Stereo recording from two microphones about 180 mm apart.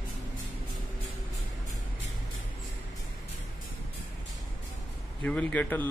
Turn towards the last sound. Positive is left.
turn(degrees=10)  # may be behind; listen again after turning